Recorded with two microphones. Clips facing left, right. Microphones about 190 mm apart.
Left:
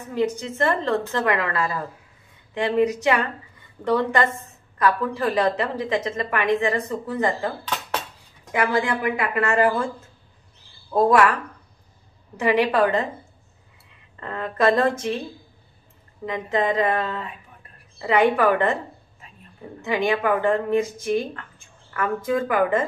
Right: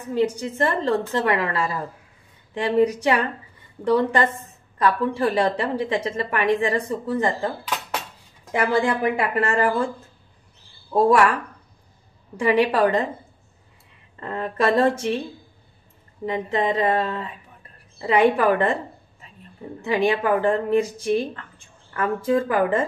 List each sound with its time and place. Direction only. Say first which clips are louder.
0.1 s a woman's voice: right 2 dB; 35° right (ahead or behind)
8.5 s a woman's voice: right 2 dB; 30° right (ahead or behind)
12.4 s a woman's voice: right 1 dB; 35° right (ahead or behind)
14.2 s a woman's voice: left 1 dB; 30° right (ahead or behind)
16.3 s a woman's voice: even; 30° right (ahead or behind)
19.8 s a woman's voice: right 1 dB; 30° right (ahead or behind)